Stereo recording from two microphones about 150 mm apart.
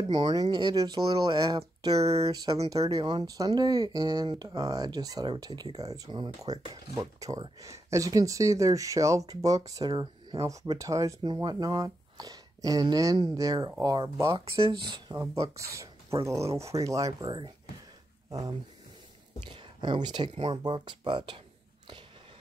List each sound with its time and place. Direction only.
0.1 s speech: 25° right (ahead or behind)
2.0 s speech: 45° right (ahead or behind)
2.3 s speech: 25° right (ahead or behind)
19.5 s speech: 30° right (ahead or behind)